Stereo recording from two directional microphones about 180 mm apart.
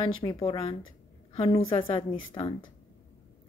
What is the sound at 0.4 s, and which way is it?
A woman's voice, 30° left (ahead or behind).